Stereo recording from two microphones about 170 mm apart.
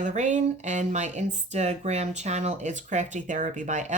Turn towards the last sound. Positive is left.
turn(degrees=-45)  # may be behind; listen again after turning